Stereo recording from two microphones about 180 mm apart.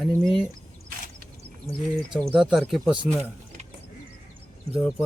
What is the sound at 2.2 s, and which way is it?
Speech, 5° right (ahead or behind).